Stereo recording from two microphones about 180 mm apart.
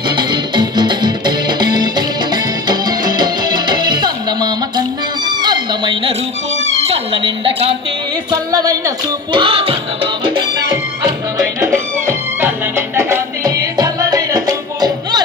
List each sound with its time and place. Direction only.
0.1 s music: 25° right (ahead or behind)
5.4 s a sound: 25° right (ahead or behind)
6.6 s cat: 35° right (ahead or behind)
8.3 s music: 20° right (ahead or behind)
11.6 s music: 15° right (ahead or behind)